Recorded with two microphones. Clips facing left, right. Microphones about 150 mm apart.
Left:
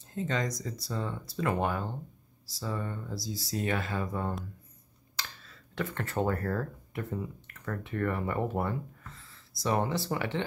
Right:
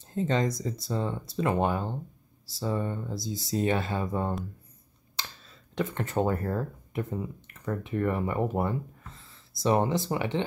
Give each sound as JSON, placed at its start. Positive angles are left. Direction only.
{"t": 0.1, "sound": "speech", "side_deg": -30}